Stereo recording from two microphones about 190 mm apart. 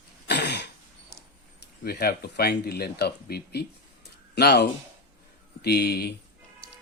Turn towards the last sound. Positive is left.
turn(degrees=55)  # may be behind; listen again after turning